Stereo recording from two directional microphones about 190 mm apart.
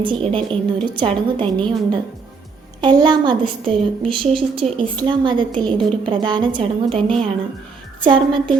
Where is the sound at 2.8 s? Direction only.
25° right (ahead or behind).